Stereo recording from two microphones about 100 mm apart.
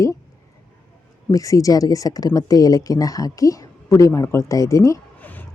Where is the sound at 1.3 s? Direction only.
35° left (ahead or behind).